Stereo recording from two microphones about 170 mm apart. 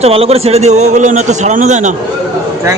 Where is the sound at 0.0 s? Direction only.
35° right (ahead or behind).